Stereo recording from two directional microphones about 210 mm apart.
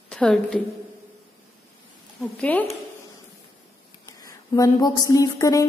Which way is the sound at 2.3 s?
5° left (ahead or behind).